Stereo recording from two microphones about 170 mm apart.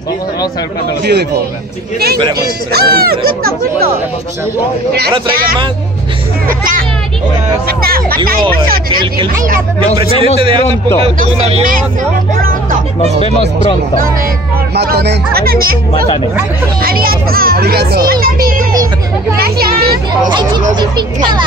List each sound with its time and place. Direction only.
1.0 s a man's voice: 75° right (ahead or behind)
2.7 s speech: 70° right (ahead or behind)
6.4 s speech: 55° right (ahead or behind)
10.1 s a man's voice: 35° left (ahead or behind)
11.4 s speech: 50° right (ahead or behind)
12.4 s music: 55° right (ahead or behind)
14.8 s speech: 75° right (ahead or behind)
16.8 s speech: 60° right (ahead or behind)
20.2 s a child's voice: 25° right (ahead or behind)